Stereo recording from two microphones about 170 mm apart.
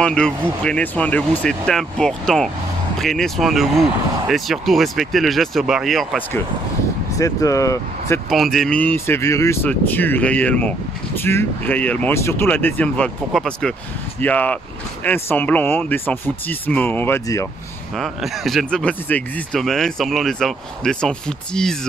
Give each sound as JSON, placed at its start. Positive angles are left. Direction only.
{"t": 0.0, "sound": "speech", "side_deg": 5}
{"t": 7.2, "sound": "speech", "side_deg": 20}
{"t": 8.3, "sound": "speech", "side_deg": 0}
{"t": 17.9, "sound": "speech", "side_deg": 0}